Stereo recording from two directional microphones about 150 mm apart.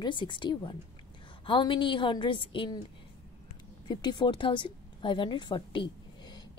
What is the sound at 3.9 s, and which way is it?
A woman's voice, 30° left (ahead or behind).